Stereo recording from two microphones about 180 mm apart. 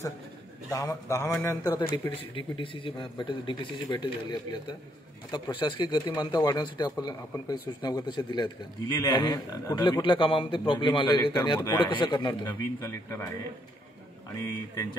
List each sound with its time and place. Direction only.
0.7 s a man's voice: 15° left (ahead or behind)